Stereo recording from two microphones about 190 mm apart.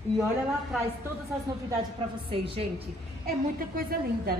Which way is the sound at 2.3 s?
30° right (ahead or behind).